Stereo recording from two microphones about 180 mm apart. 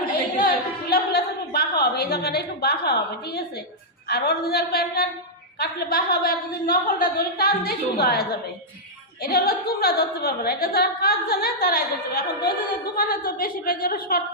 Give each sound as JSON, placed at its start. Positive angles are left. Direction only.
{"t": 0.3, "sound": "a sound", "side_deg": 55}
{"t": 1.8, "sound": "a woman's voice", "side_deg": 60}
{"t": 9.2, "sound": "a woman's voice", "side_deg": 60}